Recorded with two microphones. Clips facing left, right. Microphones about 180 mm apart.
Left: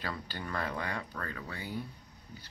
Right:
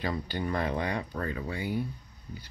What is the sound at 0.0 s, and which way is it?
Speech, 15° right (ahead or behind).